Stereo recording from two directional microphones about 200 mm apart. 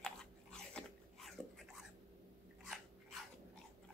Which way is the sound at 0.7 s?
5° left (ahead or behind).